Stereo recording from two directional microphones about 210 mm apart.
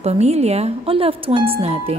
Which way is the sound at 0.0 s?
30° right (ahead or behind).